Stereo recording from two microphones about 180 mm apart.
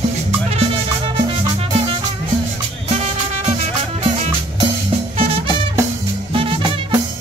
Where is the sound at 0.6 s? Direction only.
30° right (ahead or behind).